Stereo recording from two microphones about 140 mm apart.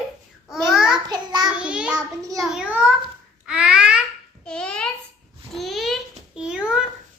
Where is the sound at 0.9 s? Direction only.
30° right (ahead or behind).